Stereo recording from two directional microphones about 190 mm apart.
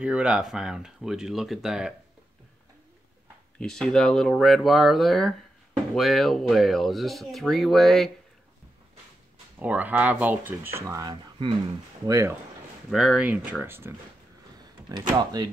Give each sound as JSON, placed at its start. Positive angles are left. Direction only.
{"t": 0.0, "sound": "speech", "side_deg": -5}
{"t": 3.5, "sound": "speech", "side_deg": 5}
{"t": 9.6, "sound": "speech", "side_deg": -10}
{"t": 12.9, "sound": "speech", "side_deg": -5}